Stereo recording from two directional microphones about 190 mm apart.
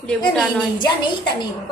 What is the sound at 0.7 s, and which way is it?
Speech, 25° left (ahead or behind).